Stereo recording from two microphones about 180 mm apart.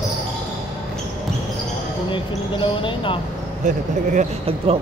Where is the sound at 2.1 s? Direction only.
25° left (ahead or behind).